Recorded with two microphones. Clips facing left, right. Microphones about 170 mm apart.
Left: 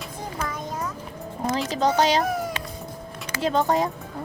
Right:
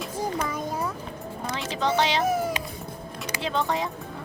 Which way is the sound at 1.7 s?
40° left (ahead or behind).